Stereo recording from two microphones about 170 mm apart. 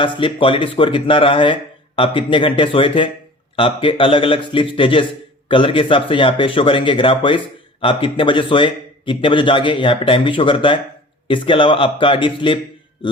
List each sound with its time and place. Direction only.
0.0 s a man's voice: 30° left (ahead or behind)